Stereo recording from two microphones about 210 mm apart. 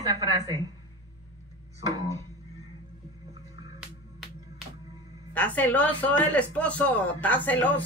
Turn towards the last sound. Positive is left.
turn(degrees=10)  # may be behind; listen again after turning